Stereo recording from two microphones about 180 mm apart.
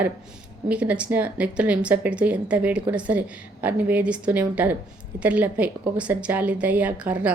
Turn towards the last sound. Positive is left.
turn(degrees=-5)  # may be behind; listen again after turning